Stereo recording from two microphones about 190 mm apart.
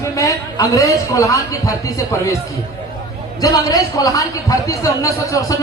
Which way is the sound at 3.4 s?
20° left (ahead or behind).